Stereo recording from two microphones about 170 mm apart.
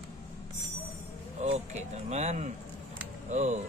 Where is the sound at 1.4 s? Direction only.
40° right (ahead or behind).